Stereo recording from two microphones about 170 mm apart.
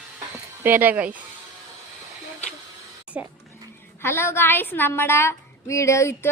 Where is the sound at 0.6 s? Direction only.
10° right (ahead or behind).